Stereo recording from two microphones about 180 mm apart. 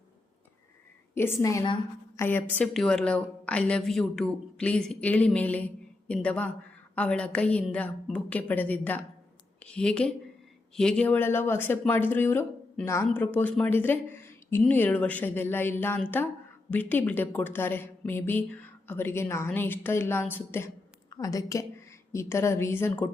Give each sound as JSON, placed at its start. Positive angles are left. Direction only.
{"t": 1.1, "sound": "a woman's voice", "side_deg": 15}